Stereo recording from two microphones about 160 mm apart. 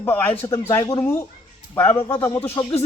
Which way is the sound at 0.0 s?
10° left (ahead or behind).